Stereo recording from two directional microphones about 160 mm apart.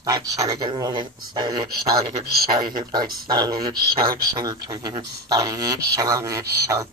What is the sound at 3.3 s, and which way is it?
Speech, 25° right (ahead or behind).